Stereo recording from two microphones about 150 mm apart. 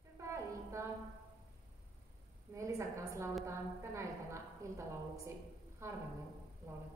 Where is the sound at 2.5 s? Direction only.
20° right (ahead or behind).